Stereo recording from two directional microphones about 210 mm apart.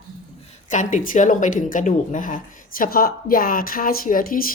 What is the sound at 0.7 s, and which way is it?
A woman's voice, 35° left (ahead or behind).